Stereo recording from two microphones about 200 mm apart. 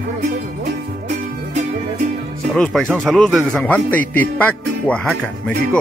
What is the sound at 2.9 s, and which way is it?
Speech, 5° left (ahead or behind).